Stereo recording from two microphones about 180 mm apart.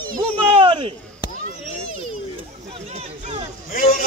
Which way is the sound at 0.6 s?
30° right (ahead or behind).